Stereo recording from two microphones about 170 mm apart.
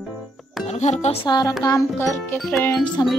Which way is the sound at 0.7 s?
45° left (ahead or behind).